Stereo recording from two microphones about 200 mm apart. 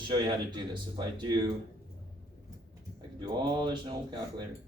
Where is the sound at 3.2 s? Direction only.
20° right (ahead or behind).